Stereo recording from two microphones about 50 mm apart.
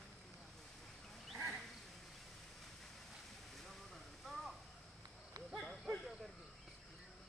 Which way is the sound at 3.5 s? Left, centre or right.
Centre.